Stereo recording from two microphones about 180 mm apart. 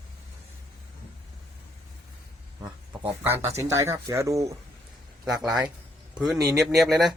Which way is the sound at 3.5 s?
15° right (ahead or behind).